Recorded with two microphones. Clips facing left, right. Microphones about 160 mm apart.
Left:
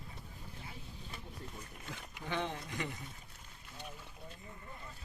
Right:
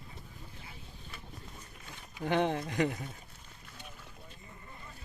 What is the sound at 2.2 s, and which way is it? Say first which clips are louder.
Speech: right 9 dB; 60° right (ahead or behind).